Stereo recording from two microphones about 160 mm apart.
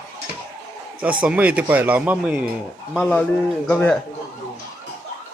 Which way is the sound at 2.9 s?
5° left (ahead or behind).